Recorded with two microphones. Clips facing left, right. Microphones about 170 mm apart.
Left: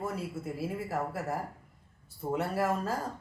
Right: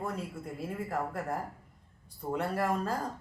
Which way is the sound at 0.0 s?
5° left (ahead or behind).